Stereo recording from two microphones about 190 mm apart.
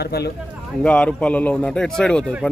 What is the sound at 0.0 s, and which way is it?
Speech, 55° left (ahead or behind).